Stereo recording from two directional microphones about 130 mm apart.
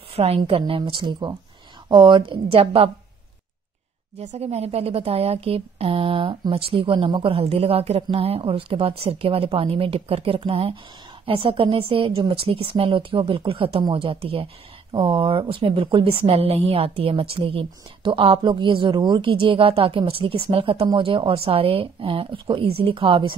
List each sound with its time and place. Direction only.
0.1 s a woman's voice: 50° right (ahead or behind)
4.2 s a woman's voice: 60° right (ahead or behind); by 23.3 s 40° right (ahead or behind)